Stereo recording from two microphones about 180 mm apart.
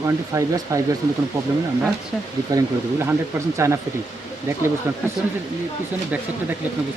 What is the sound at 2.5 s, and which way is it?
Speech, 15° right (ahead or behind).